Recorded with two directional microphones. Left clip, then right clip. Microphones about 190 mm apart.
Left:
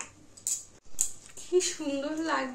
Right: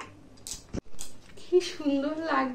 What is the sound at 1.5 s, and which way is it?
Speech, 15° left (ahead or behind).